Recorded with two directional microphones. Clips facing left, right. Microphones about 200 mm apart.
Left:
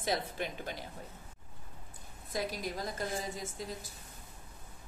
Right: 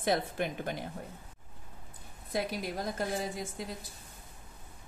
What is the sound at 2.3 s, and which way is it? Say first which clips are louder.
Speech: right 3 dB; 55° right (ahead or behind).